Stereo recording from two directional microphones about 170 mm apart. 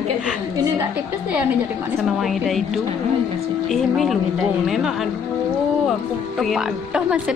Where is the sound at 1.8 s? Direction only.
Centre (ahead or behind).